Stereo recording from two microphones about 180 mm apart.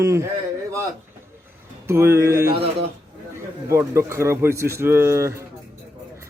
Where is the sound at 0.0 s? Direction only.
15° right (ahead or behind).